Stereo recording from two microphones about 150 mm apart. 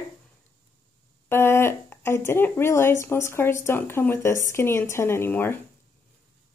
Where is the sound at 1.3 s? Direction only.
15° left (ahead or behind).